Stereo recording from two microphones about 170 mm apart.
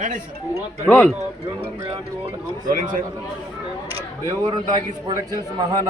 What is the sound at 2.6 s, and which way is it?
Speech, 50° right (ahead or behind).